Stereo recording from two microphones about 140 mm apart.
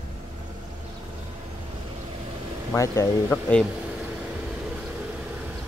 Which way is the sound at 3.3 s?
5° left (ahead or behind).